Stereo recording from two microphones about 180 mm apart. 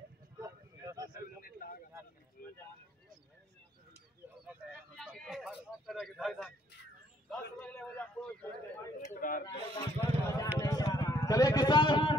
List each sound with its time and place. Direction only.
0.4 s vehicle: 20° right (ahead or behind)
1.4 s a sound: 50° left (ahead or behind)
4.9 s speech: centre (ahead or behind)
7.6 s a sound: 5° left (ahead or behind)
9.1 s speech: 45° left (ahead or behind)
9.9 s speech: 20° left (ahead or behind)
10.6 s vehicle: 20° left (ahead or behind)